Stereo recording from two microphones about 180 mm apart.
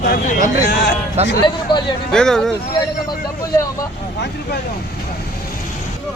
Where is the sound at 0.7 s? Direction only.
75° left (ahead or behind).